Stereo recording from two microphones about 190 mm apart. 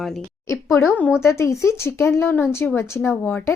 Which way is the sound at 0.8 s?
10° left (ahead or behind).